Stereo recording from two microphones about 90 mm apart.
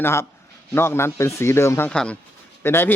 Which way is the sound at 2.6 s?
25° left (ahead or behind).